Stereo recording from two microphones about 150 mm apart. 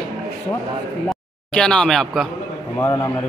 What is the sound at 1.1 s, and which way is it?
Speech, 5° left (ahead or behind).